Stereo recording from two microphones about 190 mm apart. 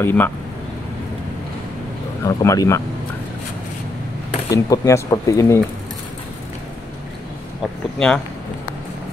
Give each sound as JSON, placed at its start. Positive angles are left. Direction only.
{"t": 0.0, "sound": "speech", "side_deg": 10}
{"t": 2.2, "sound": "speech", "side_deg": 15}
{"t": 4.5, "sound": "speech", "side_deg": 15}
{"t": 8.0, "sound": "speech", "side_deg": 0}